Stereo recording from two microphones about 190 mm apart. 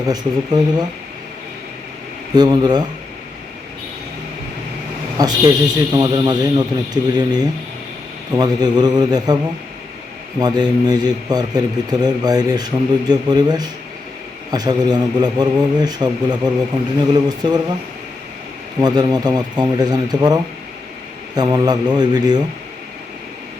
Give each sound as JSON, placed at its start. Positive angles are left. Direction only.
{"t": 0.1, "sound": "a man's voice", "side_deg": -20}
{"t": 2.3, "sound": "a man's voice", "side_deg": -20}
{"t": 5.1, "sound": "a man's voice", "side_deg": -20}
{"t": 10.4, "sound": "a man's voice", "side_deg": -20}
{"t": 18.8, "sound": "a man's voice", "side_deg": -20}